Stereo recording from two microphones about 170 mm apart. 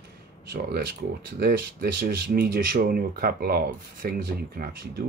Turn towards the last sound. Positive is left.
turn(degrees=-60)  # may be behind; listen again after turning